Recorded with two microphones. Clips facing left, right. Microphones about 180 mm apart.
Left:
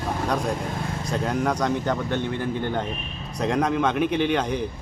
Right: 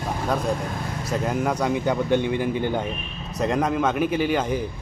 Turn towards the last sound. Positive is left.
turn(degrees=-5)  # may be behind; listen again after turning